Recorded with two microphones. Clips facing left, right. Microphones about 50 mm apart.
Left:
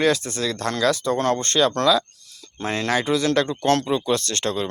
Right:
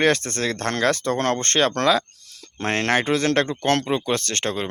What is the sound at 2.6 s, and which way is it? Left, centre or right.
Speech, right.